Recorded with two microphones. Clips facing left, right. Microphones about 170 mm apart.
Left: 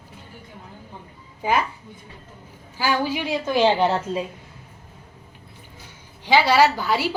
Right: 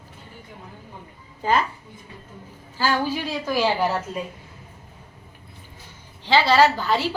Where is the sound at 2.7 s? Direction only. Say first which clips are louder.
Even; 15° left (ahead or behind).